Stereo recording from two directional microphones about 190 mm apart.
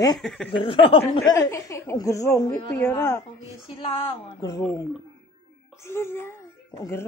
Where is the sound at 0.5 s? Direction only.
25° left (ahead or behind).